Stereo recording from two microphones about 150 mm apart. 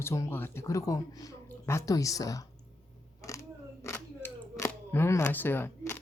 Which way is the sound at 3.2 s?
20° left (ahead or behind).